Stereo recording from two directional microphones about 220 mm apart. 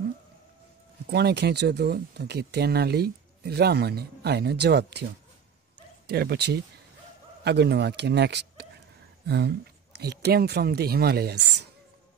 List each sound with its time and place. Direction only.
1.0 s speech: 50° right (ahead or behind)
6.0 s speech: 45° right (ahead or behind)
9.9 s speech: 45° right (ahead or behind)